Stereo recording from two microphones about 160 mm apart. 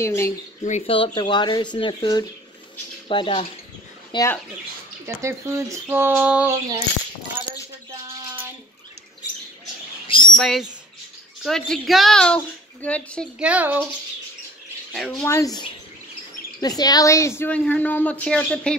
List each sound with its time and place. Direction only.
0.0 s speech: 15° left (ahead or behind)
0.7 s speech: 45° left (ahead or behind)
0.9 s speech: 35° left (ahead or behind)
5.0 s speech: 20° right (ahead or behind)
10.2 s a woman's voice: centre (ahead or behind)
13.4 s speech: 10° right (ahead or behind)
14.9 s speech: 5° left (ahead or behind)
15.2 s speech: 20° left (ahead or behind)